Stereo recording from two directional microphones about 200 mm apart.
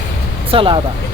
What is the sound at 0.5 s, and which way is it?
Speech, 25° right (ahead or behind).